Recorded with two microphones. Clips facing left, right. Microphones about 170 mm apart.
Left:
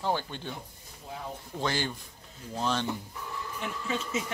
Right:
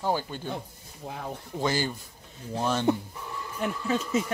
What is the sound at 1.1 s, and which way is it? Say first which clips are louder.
Speech: right 3 dB; 65° right (ahead or behind).